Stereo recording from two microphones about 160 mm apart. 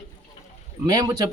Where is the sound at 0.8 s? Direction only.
25° right (ahead or behind).